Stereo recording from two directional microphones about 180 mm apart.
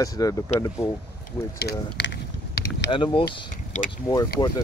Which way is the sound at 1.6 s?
65° left (ahead or behind).